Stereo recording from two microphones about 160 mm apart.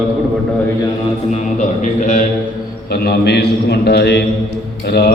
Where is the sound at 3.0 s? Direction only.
90° left.